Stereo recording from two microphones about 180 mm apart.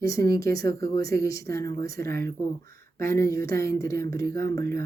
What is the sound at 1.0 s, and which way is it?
Speech, 55° right (ahead or behind).